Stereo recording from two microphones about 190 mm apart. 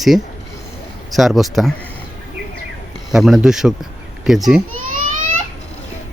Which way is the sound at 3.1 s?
Centre (ahead or behind).